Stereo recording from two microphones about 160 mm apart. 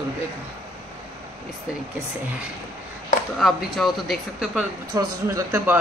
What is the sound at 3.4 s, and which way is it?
A woman's voice, centre (ahead or behind).